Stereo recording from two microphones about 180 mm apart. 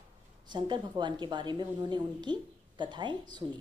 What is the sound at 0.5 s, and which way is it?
A woman's voice, 25° right (ahead or behind).